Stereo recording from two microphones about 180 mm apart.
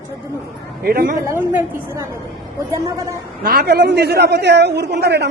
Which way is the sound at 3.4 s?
60° right (ahead or behind).